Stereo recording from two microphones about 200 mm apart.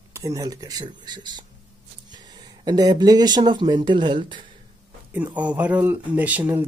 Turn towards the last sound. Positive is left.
turn(degrees=-10)  # may be behind; listen again after turning